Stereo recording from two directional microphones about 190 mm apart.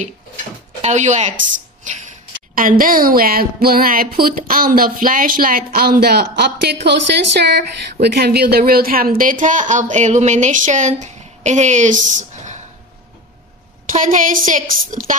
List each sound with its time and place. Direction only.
0.8 s speech: 40° right (ahead or behind)
13.9 s speech: 45° right (ahead or behind)